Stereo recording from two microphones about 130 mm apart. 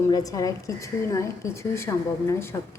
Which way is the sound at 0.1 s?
30° left (ahead or behind).